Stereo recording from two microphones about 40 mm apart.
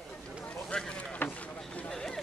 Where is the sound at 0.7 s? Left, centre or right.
Left.